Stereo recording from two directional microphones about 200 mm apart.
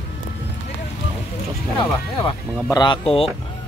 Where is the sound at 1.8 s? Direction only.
20° left (ahead or behind).